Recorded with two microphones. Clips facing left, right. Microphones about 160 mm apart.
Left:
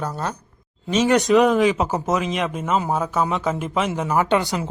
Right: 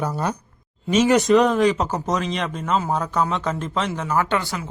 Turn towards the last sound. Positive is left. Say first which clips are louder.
# left 3 dB
turn(degrees=20)  # may be behind; listen again after turning